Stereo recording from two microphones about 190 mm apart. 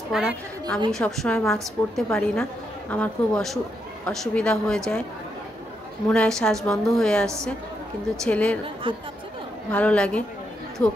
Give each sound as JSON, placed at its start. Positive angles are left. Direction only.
{"t": 0.1, "sound": "a woman's voice", "side_deg": 0}
{"t": 6.0, "sound": "a woman's voice", "side_deg": 5}
{"t": 8.9, "sound": "speech", "side_deg": -25}
{"t": 9.7, "sound": "a woman's voice", "side_deg": 5}